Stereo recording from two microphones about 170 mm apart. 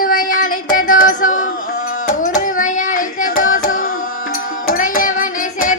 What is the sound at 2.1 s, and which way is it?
Carnatic music, 50° left (ahead or behind).